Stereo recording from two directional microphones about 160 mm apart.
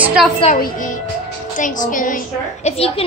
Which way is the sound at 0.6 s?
55° left (ahead or behind).